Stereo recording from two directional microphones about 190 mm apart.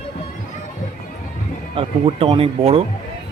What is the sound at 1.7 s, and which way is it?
Speech, 30° right (ahead or behind).